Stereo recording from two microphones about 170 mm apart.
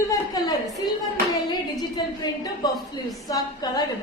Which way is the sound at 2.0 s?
25° left (ahead or behind).